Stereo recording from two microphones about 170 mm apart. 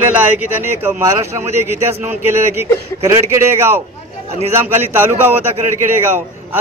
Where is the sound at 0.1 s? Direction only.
10° right (ahead or behind).